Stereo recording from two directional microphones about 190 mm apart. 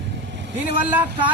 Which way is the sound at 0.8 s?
10° right (ahead or behind).